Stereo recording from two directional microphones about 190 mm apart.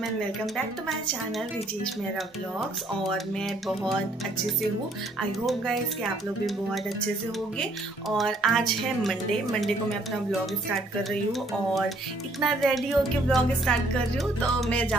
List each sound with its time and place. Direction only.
3.1 s speech: centre (ahead or behind)
5.5 s speech: centre (ahead or behind)
8.2 s speech: centre (ahead or behind)
11.1 s speech: centre (ahead or behind)